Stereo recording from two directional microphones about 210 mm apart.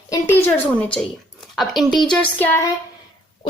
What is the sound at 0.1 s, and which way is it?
A woman's voice, 10° left (ahead or behind).